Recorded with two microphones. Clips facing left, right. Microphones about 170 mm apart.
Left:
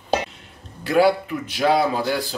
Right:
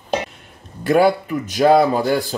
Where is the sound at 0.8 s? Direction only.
50° right (ahead or behind).